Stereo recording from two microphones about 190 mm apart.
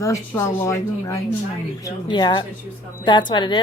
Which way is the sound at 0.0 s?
15° left (ahead or behind).